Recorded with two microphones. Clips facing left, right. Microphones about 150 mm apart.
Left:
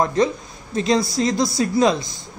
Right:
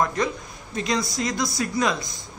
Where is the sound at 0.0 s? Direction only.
30° left (ahead or behind).